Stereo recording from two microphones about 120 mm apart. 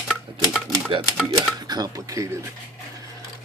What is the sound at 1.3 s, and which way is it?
Speech, 35° right (ahead or behind).